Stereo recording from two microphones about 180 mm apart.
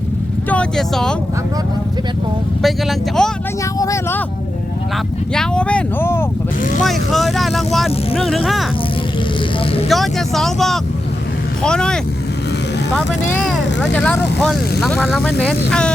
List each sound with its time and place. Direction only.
0.5 s speech: 5° left (ahead or behind)
3.2 s speech: 5° left (ahead or behind)
3.8 s speech: 15° left (ahead or behind)
5.3 s speech: 5° left (ahead or behind)
6.8 s speech: centre (ahead or behind)
9.9 s speech: centre (ahead or behind)
13.5 s speech: 5° left (ahead or behind)